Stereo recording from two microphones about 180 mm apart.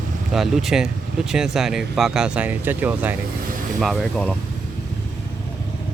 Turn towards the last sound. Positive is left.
turn(degrees=5)  # may be behind; listen again after turning